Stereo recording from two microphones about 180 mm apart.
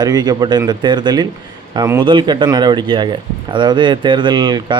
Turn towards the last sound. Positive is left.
turn(degrees=-25)  # may be behind; listen again after turning